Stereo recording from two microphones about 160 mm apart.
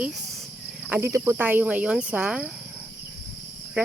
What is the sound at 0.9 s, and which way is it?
Speech, 15° right (ahead or behind).